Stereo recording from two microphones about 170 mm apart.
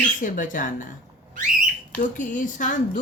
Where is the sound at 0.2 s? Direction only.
50° left (ahead or behind).